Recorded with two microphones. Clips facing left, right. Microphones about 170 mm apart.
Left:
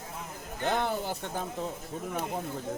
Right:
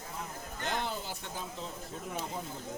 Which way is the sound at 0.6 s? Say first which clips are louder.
Left 7 dB; 55° left (ahead or behind).